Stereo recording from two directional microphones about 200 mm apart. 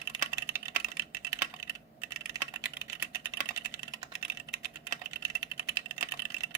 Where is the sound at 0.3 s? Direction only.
10° right (ahead or behind).